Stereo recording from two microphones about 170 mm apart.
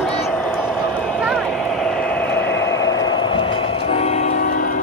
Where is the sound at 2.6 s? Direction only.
20° left (ahead or behind).